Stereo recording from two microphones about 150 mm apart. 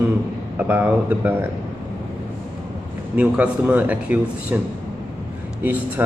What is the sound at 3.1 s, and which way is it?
Speech, 10° right (ahead or behind).